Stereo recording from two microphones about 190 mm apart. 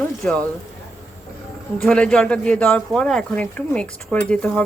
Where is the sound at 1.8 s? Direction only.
5° left (ahead or behind).